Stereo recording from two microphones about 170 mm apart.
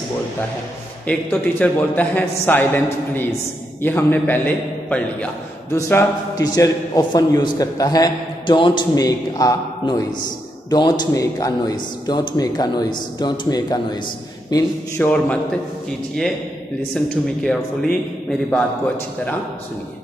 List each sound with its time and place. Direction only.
1.0 s a man's voice: 10° left (ahead or behind); by 13.7 s 25° left (ahead or behind)
15.0 s a man's voice: 10° left (ahead or behind)
16.9 s speech: 5° left (ahead or behind)